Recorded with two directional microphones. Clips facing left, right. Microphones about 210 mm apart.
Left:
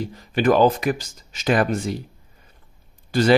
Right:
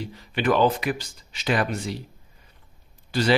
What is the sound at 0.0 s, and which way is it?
Speech, 45° left (ahead or behind).